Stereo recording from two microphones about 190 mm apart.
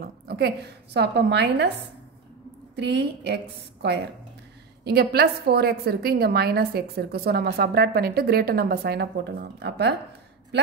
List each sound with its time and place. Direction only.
0.0 s a sound: 55° right (ahead or behind)
0.9 s a woman's voice: 60° right (ahead or behind)
2.7 s a woman's voice: 65° right (ahead or behind)
4.8 s a woman's voice: 55° right (ahead or behind)